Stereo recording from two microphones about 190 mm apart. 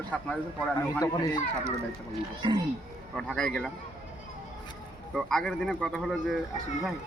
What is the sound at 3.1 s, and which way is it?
Speech, 5° left (ahead or behind).